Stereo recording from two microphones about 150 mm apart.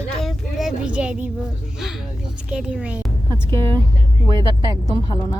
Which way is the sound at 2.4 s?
5° right (ahead or behind).